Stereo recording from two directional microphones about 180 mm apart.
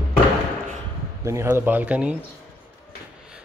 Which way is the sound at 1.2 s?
15° right (ahead or behind).